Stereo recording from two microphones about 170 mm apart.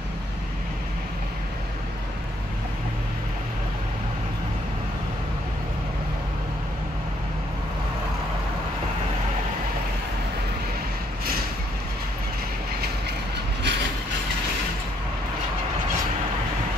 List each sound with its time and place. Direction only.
13.6 s train: 85° right